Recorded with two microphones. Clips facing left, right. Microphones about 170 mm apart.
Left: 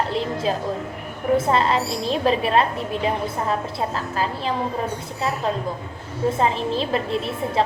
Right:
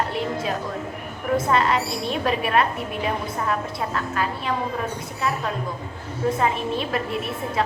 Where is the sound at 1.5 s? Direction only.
30° left (ahead or behind).